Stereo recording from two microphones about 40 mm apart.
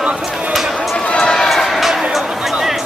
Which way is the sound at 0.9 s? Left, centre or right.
Left.